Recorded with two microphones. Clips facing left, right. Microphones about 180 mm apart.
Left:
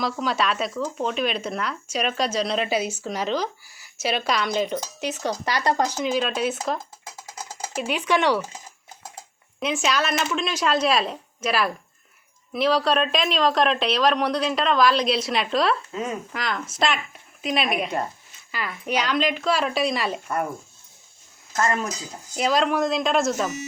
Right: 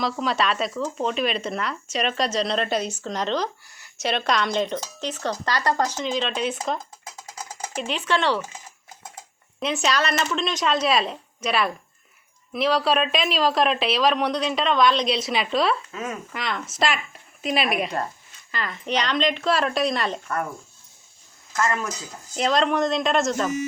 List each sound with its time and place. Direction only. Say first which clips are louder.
0.0 s speech: even; centre (ahead or behind)
9.6 s speech: even; centre (ahead or behind)
15.9 s speech: left 2 dB; 15° left (ahead or behind)
16.3 s speech: left 1 dB; centre (ahead or behind)
21.5 s speech: left 1 dB; 30° left (ahead or behind)
22.4 s speech: even; 5° left (ahead or behind)